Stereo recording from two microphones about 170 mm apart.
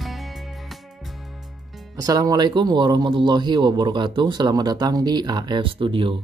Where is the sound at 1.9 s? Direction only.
20° right (ahead or behind).